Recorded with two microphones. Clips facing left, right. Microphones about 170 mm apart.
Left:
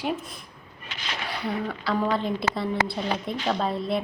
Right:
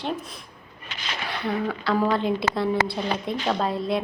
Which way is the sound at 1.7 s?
5° right (ahead or behind).